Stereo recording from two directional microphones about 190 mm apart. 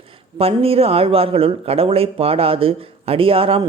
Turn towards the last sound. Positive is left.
turn(degrees=-30)  # may be behind; listen again after turning